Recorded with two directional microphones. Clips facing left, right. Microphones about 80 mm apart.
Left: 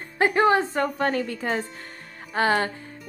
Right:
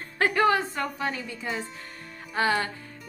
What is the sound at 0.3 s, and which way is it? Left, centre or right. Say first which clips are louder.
A woman's voice: left 3 dB; left.